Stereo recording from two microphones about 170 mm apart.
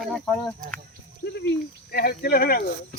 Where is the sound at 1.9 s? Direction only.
65° left (ahead or behind).